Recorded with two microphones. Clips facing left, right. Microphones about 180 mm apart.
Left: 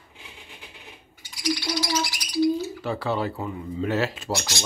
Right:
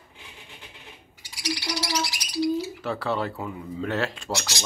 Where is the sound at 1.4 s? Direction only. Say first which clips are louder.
Left 4 dB; 80° right.